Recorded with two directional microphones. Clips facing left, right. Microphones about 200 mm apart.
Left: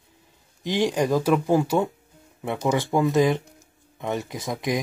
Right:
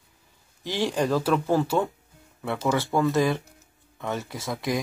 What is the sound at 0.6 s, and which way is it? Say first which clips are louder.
Speech: left 3 dB; 15° left (ahead or behind).